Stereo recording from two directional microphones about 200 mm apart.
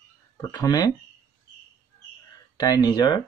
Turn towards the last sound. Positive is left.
turn(degrees=20)  # may be behind; listen again after turning